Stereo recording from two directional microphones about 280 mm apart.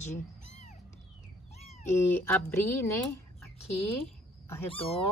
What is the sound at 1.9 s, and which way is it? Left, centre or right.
A woman's voice, centre.